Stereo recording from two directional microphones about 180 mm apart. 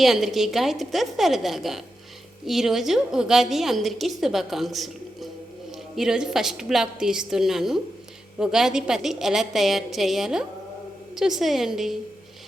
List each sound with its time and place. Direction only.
0.0 s a woman's voice: centre (ahead or behind)